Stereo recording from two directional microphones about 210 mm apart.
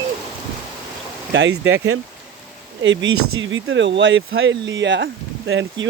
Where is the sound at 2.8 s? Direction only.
65° right (ahead or behind).